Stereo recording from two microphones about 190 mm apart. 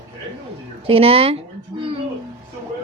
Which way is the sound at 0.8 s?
30° right (ahead or behind).